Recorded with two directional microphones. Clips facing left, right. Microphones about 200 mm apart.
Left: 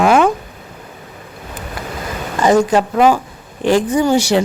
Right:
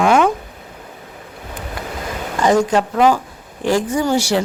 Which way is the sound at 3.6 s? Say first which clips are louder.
Left 4 dB; 20° left (ahead or behind).